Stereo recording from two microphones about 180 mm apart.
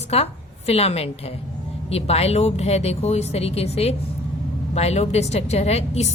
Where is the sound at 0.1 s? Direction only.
35° left (ahead or behind).